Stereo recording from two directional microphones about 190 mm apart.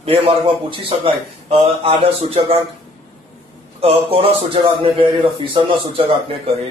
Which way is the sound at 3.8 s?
30° right (ahead or behind).